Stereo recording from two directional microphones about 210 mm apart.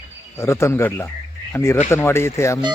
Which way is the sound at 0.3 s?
10° left (ahead or behind).